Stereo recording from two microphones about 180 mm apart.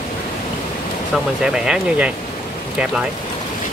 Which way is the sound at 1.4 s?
5° right (ahead or behind).